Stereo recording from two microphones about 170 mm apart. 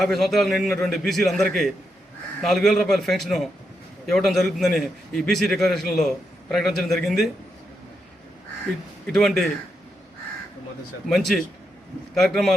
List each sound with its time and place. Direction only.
0.0 s a man's voice: centre (ahead or behind)
9.1 s a man's voice: centre (ahead or behind)
11.1 s a man's voice: centre (ahead or behind)